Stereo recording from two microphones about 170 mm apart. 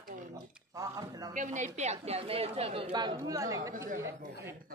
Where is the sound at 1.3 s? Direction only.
45° right (ahead or behind); by 4.5 s 15° right (ahead or behind).